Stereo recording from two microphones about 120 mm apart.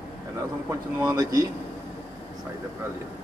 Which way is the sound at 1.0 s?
35° right (ahead or behind).